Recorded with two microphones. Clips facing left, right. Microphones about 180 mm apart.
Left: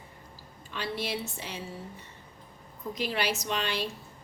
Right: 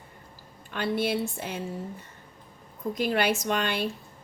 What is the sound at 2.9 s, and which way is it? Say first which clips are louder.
Speech: right 5 dB; 50° right (ahead or behind).